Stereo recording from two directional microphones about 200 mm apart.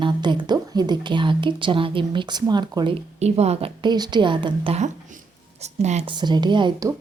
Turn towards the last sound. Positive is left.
turn(degrees=-20)  # may be behind; listen again after turning